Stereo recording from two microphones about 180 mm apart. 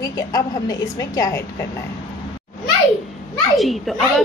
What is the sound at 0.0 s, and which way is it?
A woman's voice, 20° left (ahead or behind).